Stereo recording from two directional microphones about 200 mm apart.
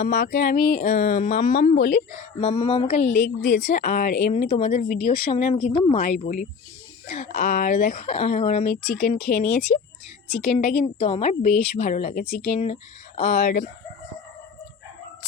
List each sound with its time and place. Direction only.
0.0 s speech: 35° left (ahead or behind)
2.1 s speech: 30° left (ahead or behind)
3.2 s speech: 40° left (ahead or behind)